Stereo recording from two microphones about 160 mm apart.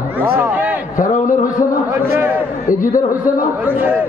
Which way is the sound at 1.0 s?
55° left (ahead or behind).